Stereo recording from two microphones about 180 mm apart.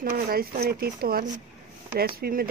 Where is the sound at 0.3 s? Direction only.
55° right (ahead or behind).